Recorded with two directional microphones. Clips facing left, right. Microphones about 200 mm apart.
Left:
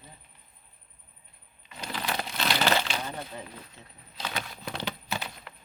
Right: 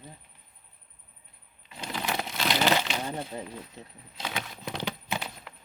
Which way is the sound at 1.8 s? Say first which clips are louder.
Right 1 dB; 20° right (ahead or behind).